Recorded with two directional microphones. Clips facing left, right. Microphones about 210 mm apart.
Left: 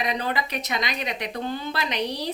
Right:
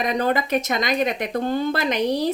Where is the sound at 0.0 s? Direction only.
45° right (ahead or behind).